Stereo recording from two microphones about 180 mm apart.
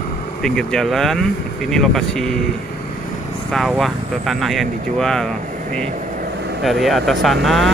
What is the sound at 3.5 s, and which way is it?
Speech, centre (ahead or behind).